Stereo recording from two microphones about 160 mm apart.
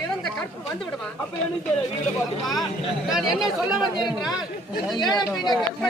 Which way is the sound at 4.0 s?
30° left (ahead or behind).